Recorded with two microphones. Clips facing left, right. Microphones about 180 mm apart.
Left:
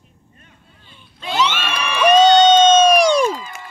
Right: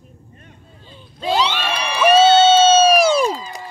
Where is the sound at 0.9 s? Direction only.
35° right (ahead or behind).